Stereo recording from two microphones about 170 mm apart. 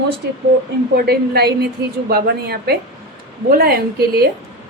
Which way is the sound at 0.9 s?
70° right (ahead or behind).